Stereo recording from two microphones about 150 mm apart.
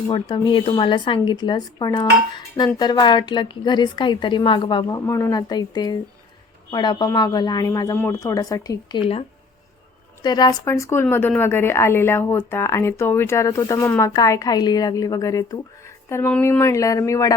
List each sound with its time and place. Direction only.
0.1 s a woman's voice: 30° left (ahead or behind)
10.2 s a woman's voice: 25° left (ahead or behind)